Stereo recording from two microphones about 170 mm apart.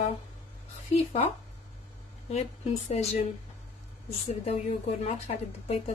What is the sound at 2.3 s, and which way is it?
Speech, 40° left (ahead or behind).